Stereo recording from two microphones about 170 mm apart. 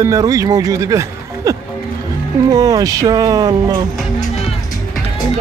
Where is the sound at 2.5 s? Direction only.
20° right (ahead or behind).